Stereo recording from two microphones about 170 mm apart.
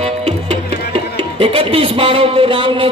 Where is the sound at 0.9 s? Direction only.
35° right (ahead or behind).